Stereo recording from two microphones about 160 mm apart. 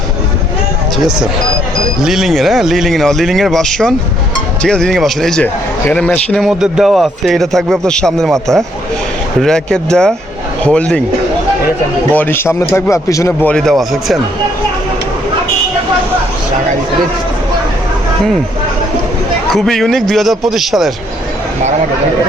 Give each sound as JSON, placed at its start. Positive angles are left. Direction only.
{"t": 2.0, "sound": "speech", "side_deg": 0}
{"t": 12.1, "sound": "a man's voice", "side_deg": 10}
{"t": 13.5, "sound": "speech", "side_deg": 5}
{"t": 19.5, "sound": "speech", "side_deg": 0}